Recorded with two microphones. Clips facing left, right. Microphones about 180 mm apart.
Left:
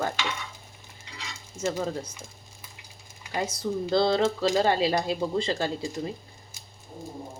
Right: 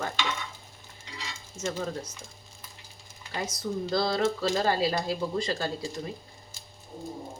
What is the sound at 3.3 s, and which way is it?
Speech, 25° left (ahead or behind).